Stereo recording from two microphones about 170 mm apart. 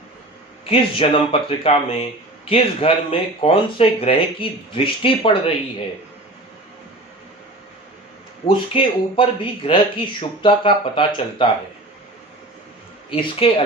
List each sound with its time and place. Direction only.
0.6 s speech: 35° left (ahead or behind)
8.4 s speech: 30° left (ahead or behind)
13.1 s speech: 30° left (ahead or behind)